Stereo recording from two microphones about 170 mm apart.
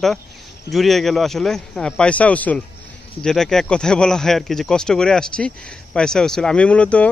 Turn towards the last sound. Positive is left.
turn(degrees=5)  # may be behind; listen again after turning